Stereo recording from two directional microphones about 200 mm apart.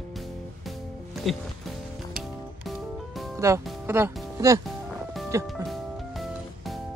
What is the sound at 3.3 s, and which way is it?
Speech, 15° right (ahead or behind).